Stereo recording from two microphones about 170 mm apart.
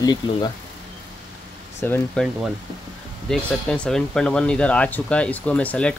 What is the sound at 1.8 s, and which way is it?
Speech, 10° left (ahead or behind).